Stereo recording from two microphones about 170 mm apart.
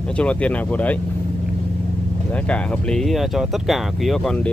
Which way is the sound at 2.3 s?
5° left (ahead or behind).